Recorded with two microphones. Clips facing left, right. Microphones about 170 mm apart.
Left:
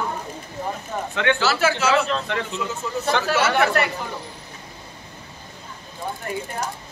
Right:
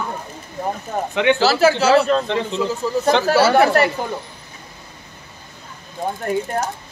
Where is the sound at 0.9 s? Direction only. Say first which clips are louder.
Right 5 dB; 45° right (ahead or behind).